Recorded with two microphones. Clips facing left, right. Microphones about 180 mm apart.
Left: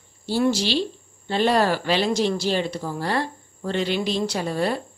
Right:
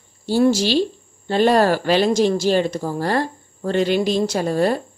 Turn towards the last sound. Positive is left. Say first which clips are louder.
# right 5 dB
turn(degrees=-45)  # may be behind; listen again after turning